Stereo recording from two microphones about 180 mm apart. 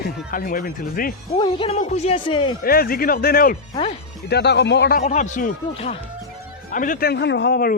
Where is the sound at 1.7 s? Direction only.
40° left (ahead or behind).